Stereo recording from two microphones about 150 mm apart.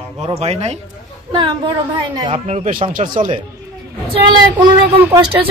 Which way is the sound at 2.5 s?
55° right (ahead or behind).